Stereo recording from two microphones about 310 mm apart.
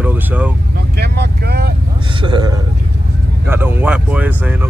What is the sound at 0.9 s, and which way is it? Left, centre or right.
Speech, right.